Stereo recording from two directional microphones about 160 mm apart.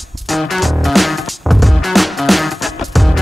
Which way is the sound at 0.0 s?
Centre (ahead or behind).